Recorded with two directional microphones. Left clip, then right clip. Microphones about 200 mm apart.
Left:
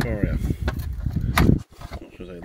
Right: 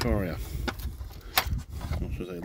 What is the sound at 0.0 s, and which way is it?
Speech, 20° right (ahead or behind).